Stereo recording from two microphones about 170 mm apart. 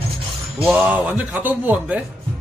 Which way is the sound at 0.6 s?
10° right (ahead or behind).